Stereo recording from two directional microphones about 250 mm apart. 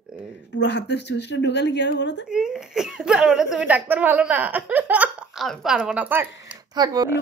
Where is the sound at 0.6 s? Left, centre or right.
Left.